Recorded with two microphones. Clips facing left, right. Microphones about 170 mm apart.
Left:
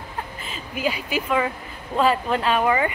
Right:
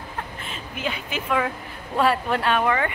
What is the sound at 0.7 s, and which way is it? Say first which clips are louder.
Speech: left 5 dB; 5° left (ahead or behind).